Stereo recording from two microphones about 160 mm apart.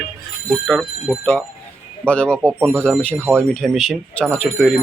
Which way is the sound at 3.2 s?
15° right (ahead or behind).